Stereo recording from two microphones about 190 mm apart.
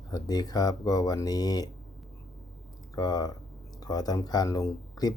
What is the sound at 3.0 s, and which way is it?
Speech, 20° left (ahead or behind).